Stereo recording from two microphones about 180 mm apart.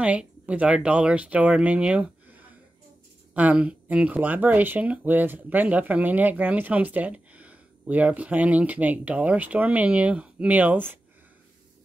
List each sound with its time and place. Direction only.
0.0 s speech: 5° right (ahead or behind)